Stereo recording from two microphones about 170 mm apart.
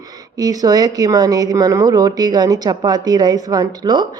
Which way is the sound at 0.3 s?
20° right (ahead or behind).